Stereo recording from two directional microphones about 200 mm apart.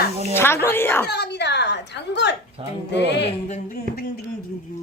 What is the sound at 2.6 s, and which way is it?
Speech, 30° right (ahead or behind).